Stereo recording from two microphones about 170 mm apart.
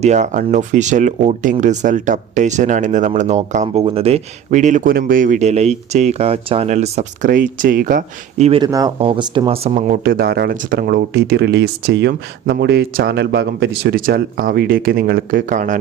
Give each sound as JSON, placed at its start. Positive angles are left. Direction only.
{"t": 0.0, "sound": "speech", "side_deg": -45}
{"t": 8.6, "sound": "speech", "side_deg": -20}